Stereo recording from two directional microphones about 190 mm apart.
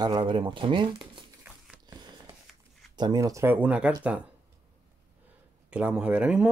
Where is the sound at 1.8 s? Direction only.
20° right (ahead or behind).